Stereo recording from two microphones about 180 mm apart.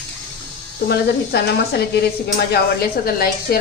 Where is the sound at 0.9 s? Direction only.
65° left (ahead or behind).